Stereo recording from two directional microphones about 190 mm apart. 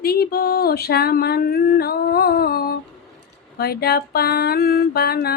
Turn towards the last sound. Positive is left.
turn(degrees=55)  # may be behind; listen again after turning